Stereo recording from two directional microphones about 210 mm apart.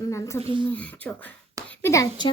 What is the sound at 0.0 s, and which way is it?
A child's voice, 15° left (ahead or behind).